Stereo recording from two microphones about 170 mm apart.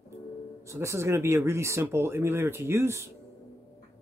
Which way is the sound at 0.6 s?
15° right (ahead or behind).